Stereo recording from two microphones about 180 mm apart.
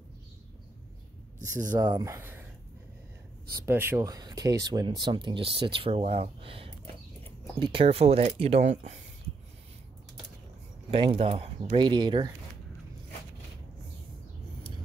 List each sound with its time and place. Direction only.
1.4 s speech: 15° right (ahead or behind)
3.6 s speech: 10° right (ahead or behind); by 9.0 s 40° right (ahead or behind)
10.9 s speech: 30° right (ahead or behind)